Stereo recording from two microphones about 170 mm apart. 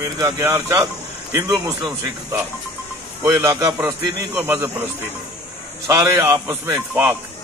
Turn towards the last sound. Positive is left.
turn(degrees=-10)  # may be behind; listen again after turning